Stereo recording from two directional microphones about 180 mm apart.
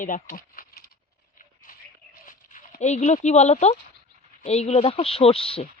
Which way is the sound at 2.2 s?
45° left (ahead or behind).